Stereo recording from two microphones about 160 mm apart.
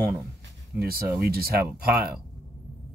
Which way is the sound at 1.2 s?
70° right (ahead or behind).